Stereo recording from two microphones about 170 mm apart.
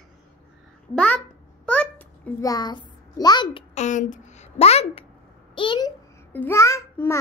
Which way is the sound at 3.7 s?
45° left (ahead or behind).